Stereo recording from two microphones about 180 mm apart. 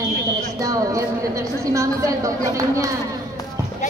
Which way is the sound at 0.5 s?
20° right (ahead or behind).